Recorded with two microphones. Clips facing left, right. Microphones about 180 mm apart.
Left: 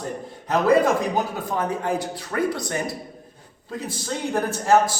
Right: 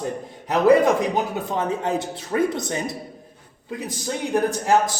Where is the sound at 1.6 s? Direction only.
25° right (ahead or behind).